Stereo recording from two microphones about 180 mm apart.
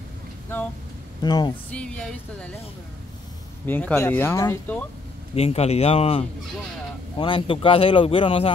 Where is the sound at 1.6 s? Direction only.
5° left (ahead or behind).